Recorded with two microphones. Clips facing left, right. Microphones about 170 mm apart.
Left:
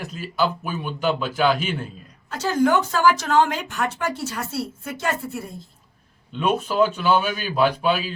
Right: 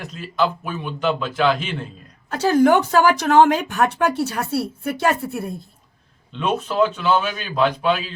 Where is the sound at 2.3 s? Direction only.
60° right (ahead or behind).